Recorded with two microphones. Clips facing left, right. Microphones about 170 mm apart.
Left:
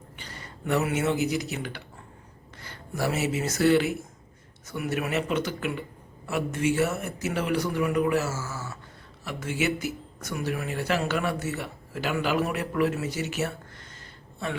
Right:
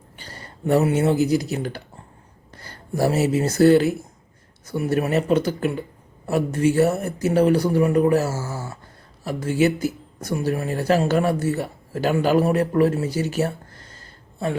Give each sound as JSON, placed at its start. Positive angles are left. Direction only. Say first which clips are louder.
{"t": 0.2, "sound": "a man's voice", "louder": "right 7 dB", "side_deg": -35}